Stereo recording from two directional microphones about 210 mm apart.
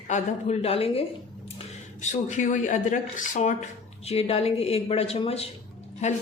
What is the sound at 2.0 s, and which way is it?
Speech, 35° left (ahead or behind).